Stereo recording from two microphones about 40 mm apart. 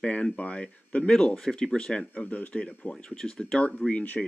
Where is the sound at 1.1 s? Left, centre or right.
Centre.